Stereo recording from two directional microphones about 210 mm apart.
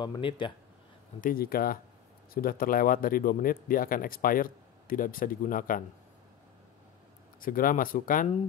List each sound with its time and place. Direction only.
0.0 s speech: 25° left (ahead or behind)
1.2 s speech: 45° left (ahead or behind)
7.3 s speech: 45° left (ahead or behind)